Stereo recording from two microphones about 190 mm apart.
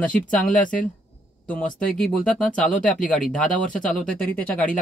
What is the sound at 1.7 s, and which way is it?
Speech, 5° left (ahead or behind).